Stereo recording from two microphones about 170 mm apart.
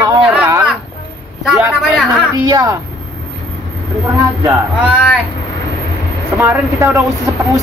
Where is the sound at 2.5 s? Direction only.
20° right (ahead or behind).